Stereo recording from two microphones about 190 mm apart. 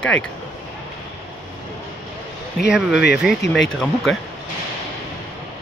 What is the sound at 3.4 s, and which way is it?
Speech, 65° left (ahead or behind).